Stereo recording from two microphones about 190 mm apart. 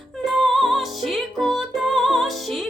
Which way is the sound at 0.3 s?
Centre (ahead or behind).